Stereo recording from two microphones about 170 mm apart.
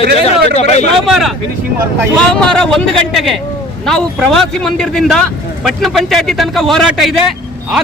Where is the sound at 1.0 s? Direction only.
Centre (ahead or behind).